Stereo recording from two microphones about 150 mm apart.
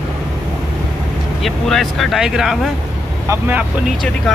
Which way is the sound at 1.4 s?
Centre (ahead or behind).